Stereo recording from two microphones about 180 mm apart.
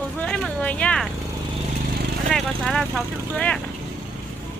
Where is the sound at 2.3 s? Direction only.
Centre (ahead or behind).